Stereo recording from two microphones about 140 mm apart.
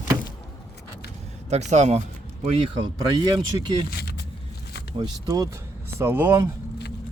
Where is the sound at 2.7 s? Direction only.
30° right (ahead or behind).